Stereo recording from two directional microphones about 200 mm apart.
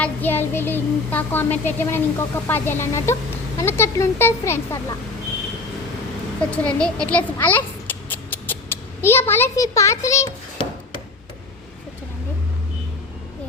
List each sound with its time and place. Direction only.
0.0 s child singing: 10° left (ahead or behind)
6.5 s child singing: 5° left (ahead or behind)
8.1 s a child's voice: 10° left (ahead or behind)